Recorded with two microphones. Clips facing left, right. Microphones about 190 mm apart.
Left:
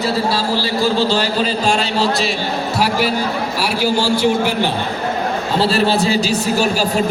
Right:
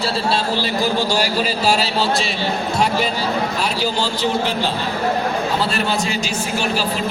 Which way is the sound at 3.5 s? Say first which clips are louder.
Left 3 dB; 10° left (ahead or behind).